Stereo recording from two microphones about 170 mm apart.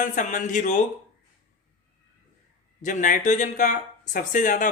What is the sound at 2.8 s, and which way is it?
Speech, 50° left (ahead or behind).